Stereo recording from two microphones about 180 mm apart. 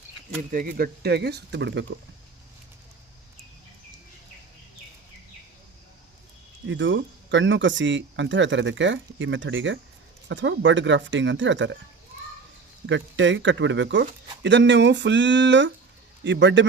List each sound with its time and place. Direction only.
0.5 s speech: 55° right (ahead or behind); by 1.8 s 75° right (ahead or behind)
6.7 s speech: 90° right
12.8 s speech: 90° right